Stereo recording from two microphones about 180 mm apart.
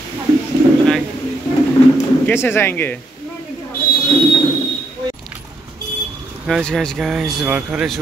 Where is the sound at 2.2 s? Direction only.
10° left (ahead or behind).